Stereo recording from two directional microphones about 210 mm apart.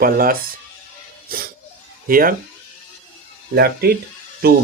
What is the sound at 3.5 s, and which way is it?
Speech, 50° right (ahead or behind).